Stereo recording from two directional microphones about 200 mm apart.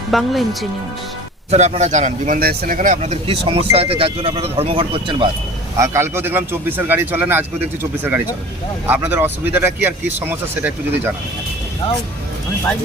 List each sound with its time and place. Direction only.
0.1 s speech: centre (ahead or behind)
1.5 s a man's voice: 35° right (ahead or behind)
5.7 s speech: 15° right (ahead or behind)